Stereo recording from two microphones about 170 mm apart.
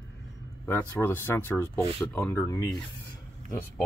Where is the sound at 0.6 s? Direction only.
15° left (ahead or behind).